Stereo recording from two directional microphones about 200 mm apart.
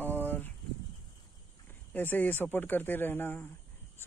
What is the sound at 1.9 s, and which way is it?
Speech, 10° left (ahead or behind).